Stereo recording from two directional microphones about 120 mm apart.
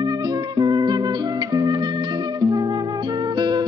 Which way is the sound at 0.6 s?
35° right (ahead or behind).